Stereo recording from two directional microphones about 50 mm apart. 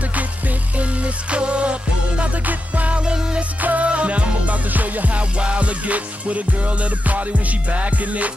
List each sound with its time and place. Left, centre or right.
0.7 s music: right